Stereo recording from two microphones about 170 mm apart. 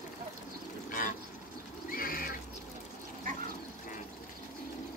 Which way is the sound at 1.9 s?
55° left (ahead or behind).